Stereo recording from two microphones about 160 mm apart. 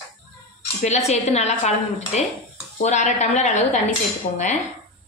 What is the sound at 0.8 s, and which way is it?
Speech, 45° left (ahead or behind).